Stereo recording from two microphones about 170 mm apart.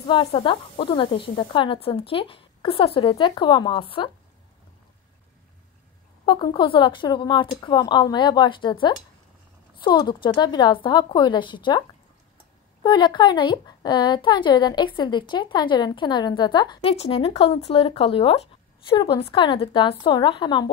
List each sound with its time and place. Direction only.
0.0 s speech: 30° left (ahead or behind)
6.2 s speech: 30° left (ahead or behind)
12.8 s speech: 25° left (ahead or behind)